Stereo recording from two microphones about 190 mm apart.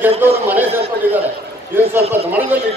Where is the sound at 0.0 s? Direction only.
10° right (ahead or behind).